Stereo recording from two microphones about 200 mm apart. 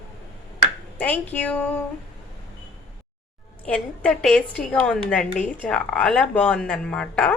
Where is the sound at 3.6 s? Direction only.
5° left (ahead or behind).